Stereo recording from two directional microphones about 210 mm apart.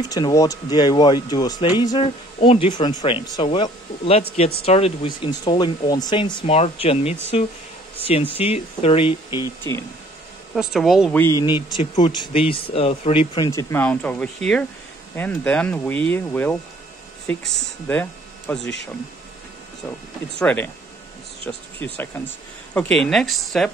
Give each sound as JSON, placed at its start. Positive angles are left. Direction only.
{"t": 0.1, "sound": "speech", "side_deg": 15}
{"t": 8.4, "sound": "speech", "side_deg": 30}
{"t": 10.5, "sound": "speech", "side_deg": 0}
{"t": 20.3, "sound": "speech", "side_deg": 10}